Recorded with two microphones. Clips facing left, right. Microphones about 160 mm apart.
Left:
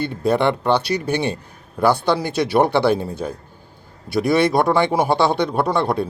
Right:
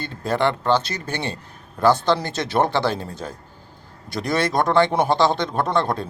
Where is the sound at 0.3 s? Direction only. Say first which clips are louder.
Left 2 dB; 15° left (ahead or behind).